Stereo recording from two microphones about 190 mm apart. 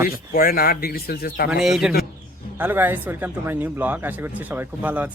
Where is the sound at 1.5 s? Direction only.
Centre (ahead or behind).